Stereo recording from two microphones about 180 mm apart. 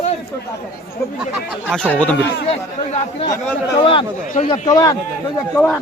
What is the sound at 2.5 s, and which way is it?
Speech, 40° left (ahead or behind).